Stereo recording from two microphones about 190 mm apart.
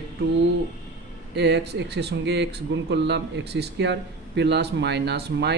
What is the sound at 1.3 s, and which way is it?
Speech, 65° right (ahead or behind).